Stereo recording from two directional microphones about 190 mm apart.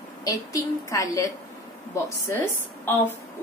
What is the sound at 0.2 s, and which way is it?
A woman's voice, 20° left (ahead or behind).